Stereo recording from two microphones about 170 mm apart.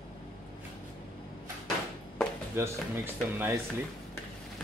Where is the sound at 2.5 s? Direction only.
15° right (ahead or behind).